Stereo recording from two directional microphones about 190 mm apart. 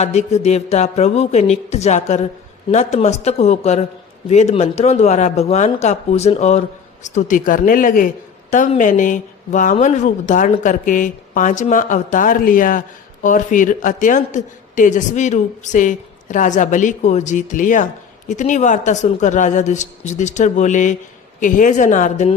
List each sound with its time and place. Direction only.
0.0 s a woman's voice: 35° left (ahead or behind)